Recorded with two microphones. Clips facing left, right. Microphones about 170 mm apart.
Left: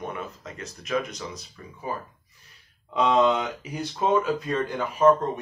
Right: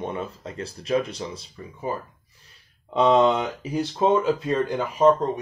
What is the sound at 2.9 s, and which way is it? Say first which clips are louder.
Speech: right 3 dB; 30° right (ahead or behind).